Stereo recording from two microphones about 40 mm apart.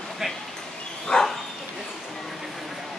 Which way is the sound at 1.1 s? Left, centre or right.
Left.